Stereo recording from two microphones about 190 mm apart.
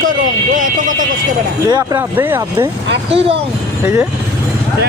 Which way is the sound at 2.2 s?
10° right (ahead or behind).